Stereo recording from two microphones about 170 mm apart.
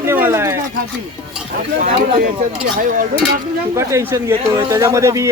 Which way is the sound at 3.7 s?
15° right (ahead or behind).